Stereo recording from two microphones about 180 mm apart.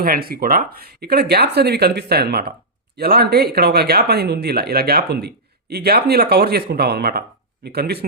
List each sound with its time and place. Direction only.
0.0 s speech: 60° right (ahead or behind)